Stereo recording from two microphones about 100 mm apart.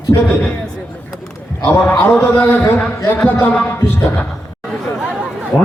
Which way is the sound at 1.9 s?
20° left (ahead or behind).